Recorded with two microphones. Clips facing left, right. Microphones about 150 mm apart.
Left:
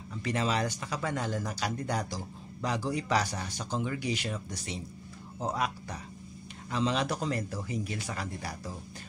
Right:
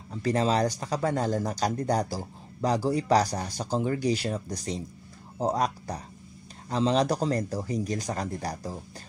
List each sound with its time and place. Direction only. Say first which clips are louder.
0.1 s speech: right 6 dB; 35° right (ahead or behind)